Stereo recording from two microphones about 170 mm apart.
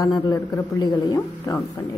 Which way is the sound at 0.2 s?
25° left (ahead or behind).